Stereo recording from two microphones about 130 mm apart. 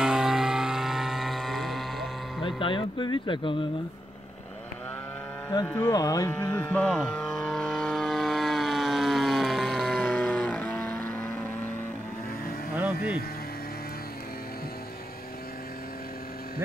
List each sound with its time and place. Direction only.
0.0 s vehicle: 5° right (ahead or behind)
2.4 s speech: 40° left (ahead or behind)
5.8 s speech: 30° left (ahead or behind)
6.3 s vehicle: 10° left (ahead or behind)
12.7 s a sound: 15° right (ahead or behind)